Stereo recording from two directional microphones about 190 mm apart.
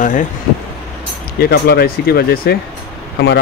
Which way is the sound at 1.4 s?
55° left (ahead or behind).